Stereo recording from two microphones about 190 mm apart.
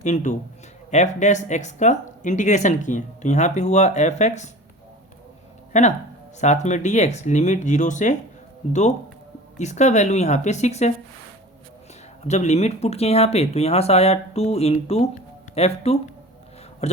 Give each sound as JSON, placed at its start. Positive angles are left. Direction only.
{"t": 0.0, "sound": "speech", "side_deg": 40}
{"t": 5.7, "sound": "speech", "side_deg": 40}
{"t": 9.6, "sound": "speech", "side_deg": 35}
{"t": 12.2, "sound": "a man's voice", "side_deg": 35}